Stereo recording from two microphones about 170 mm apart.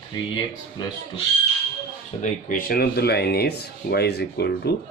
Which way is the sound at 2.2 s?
55° left (ahead or behind).